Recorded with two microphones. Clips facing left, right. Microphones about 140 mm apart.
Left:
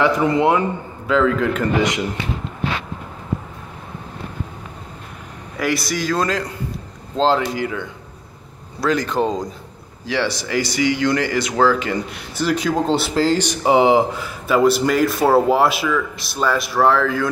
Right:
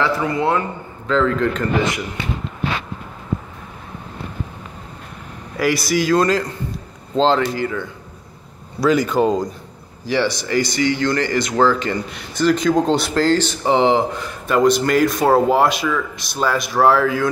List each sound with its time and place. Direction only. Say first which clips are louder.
0.0 s a man's voice: left 3 dB; 20° left (ahead or behind)
5.6 s speech: right 3 dB; centre (ahead or behind)
8.8 s speech: right 3 dB; 5° right (ahead or behind)